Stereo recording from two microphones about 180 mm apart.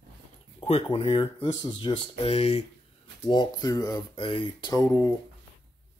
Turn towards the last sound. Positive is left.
turn(degrees=20)  # may be behind; listen again after turning